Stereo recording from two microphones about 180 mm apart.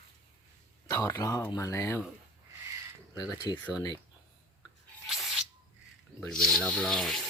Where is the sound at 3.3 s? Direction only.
20° left (ahead or behind).